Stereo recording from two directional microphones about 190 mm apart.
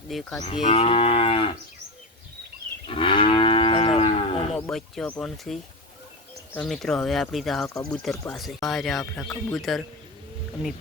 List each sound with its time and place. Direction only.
0.1 s speech: centre (ahead or behind)
0.4 s moo: 35° left (ahead or behind)
2.8 s moo: 25° left (ahead or behind)
4.5 s speech: centre (ahead or behind)